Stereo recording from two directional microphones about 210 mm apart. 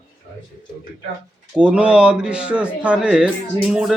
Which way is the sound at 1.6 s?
5° right (ahead or behind).